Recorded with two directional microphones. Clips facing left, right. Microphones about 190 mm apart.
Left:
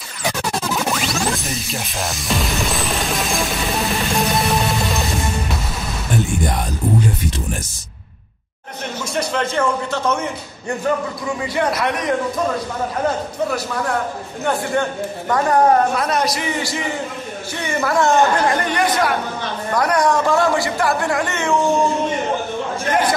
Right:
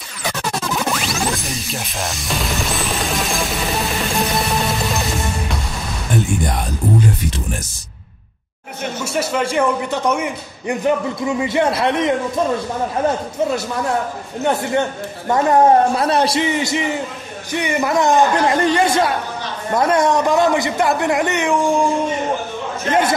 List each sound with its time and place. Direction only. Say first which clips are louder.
0.7 s music: even; centre (ahead or behind)
9.0 s a man's voice: right 1 dB; 5° right (ahead or behind); by 12.1 s 25° right (ahead or behind)
14.4 s speech: right 2 dB; 20° right (ahead or behind)